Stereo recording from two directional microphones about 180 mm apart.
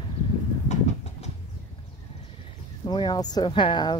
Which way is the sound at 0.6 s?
35° left (ahead or behind).